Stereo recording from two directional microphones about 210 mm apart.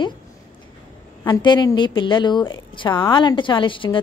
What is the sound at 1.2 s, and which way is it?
A woman's voice, 20° left (ahead or behind).